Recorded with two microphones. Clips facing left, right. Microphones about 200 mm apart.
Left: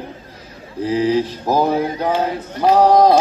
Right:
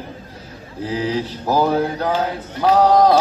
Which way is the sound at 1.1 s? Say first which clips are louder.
Left 4 dB; 15° left (ahead or behind).